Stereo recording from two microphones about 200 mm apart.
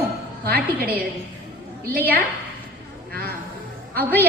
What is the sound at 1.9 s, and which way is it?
Speech, 50° right (ahead or behind).